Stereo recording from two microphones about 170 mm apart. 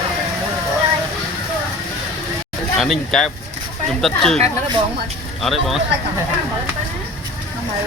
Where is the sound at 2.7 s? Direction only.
5° left (ahead or behind).